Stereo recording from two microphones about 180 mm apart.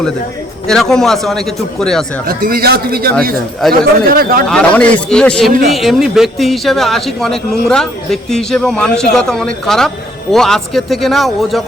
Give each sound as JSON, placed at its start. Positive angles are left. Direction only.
{"t": 0.7, "sound": "speech", "side_deg": 0}
{"t": 2.2, "sound": "a man's voice", "side_deg": -55}
{"t": 4.4, "sound": "speech", "side_deg": 5}
{"t": 5.5, "sound": "a man's voice", "side_deg": -50}
{"t": 5.7, "sound": "speech", "side_deg": 0}